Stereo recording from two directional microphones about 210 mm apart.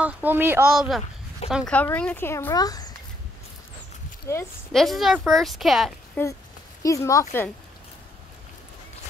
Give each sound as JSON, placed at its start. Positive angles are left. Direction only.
{"t": 0.0, "sound": "speech", "side_deg": -10}
{"t": 4.3, "sound": "speech", "side_deg": 15}
{"t": 4.7, "sound": "speech", "side_deg": 0}
{"t": 6.8, "sound": "speech", "side_deg": 15}